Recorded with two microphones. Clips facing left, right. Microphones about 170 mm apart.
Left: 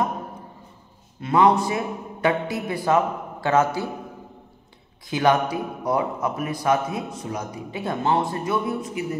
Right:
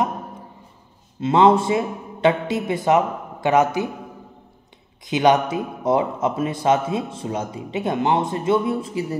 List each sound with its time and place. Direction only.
1.2 s a man's voice: 25° right (ahead or behind)
5.0 s a man's voice: 20° right (ahead or behind)